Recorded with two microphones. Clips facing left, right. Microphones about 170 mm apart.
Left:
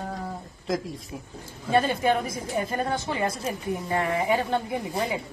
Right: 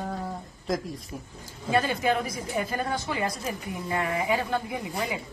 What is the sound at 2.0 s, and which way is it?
A woman's voice, 30° left (ahead or behind).